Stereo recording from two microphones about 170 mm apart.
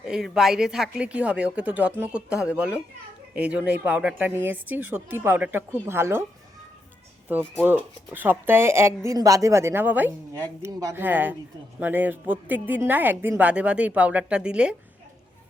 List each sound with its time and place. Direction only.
0.0 s a woman's voice: 5° right (ahead or behind)
7.6 s a woman's voice: 10° right (ahead or behind)